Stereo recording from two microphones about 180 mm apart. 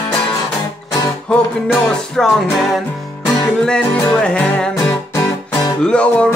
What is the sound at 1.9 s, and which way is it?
Music, 5° left (ahead or behind).